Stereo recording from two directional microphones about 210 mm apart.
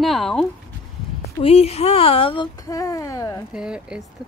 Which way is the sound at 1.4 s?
30° left (ahead or behind).